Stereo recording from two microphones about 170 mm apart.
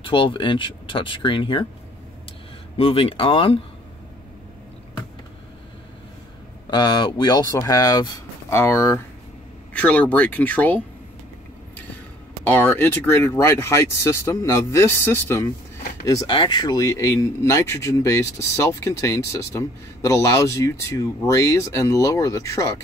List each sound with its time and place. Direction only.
0.0 s speech: 30° left (ahead or behind)
2.8 s speech: 35° left (ahead or behind)
6.7 s speech: 25° left (ahead or behind); by 10.8 s 10° left (ahead or behind)
12.4 s speech: 10° left (ahead or behind)